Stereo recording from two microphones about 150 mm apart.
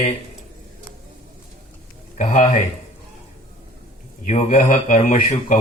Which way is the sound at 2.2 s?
55° left (ahead or behind).